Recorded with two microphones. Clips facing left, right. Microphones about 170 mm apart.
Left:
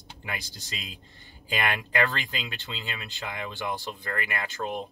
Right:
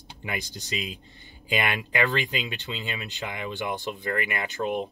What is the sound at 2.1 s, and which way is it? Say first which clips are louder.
Speech: right 6 dB; 20° right (ahead or behind).